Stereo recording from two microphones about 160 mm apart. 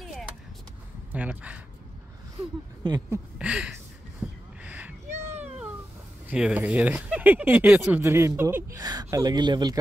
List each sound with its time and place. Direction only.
0.0 s a sound: centre (ahead or behind)
1.1 s speech: 10° right (ahead or behind)
2.8 s speech: 25° right (ahead or behind)
3.3 s speech: 5° right (ahead or behind)
4.6 s a sound: 10° right (ahead or behind)
6.2 s speech: 10° right (ahead or behind); by 9.8 s 25° right (ahead or behind)